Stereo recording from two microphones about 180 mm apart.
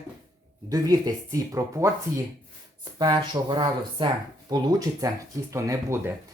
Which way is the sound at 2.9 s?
20° right (ahead or behind).